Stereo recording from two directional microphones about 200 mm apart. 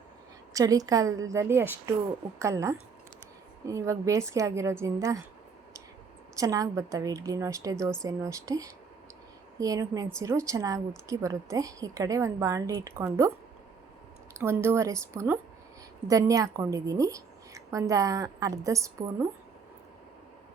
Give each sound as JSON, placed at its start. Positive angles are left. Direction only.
{"t": 0.5, "sound": "a woman's voice", "side_deg": -15}
{"t": 6.3, "sound": "a woman's voice", "side_deg": -15}
{"t": 14.3, "sound": "a woman's voice", "side_deg": -15}